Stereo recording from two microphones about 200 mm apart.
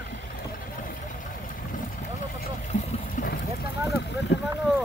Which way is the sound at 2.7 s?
40° left (ahead or behind).